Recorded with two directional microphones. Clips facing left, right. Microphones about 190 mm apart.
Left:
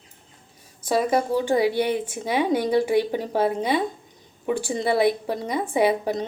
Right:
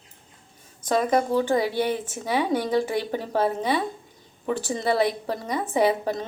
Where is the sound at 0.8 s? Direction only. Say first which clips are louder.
Even; 10° left (ahead or behind).